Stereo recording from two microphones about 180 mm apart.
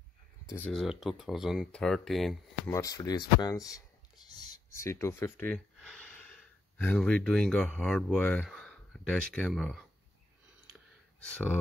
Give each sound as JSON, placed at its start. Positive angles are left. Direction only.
{"t": 0.6, "sound": "speech", "side_deg": 0}
{"t": 2.7, "sound": "speech", "side_deg": 20}
{"t": 10.7, "sound": "clicking", "side_deg": 5}